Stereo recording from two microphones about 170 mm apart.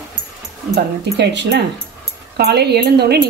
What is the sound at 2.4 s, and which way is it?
Speech, 75° right (ahead or behind).